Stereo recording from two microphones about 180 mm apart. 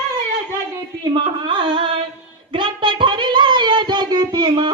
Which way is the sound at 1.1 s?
25° right (ahead or behind).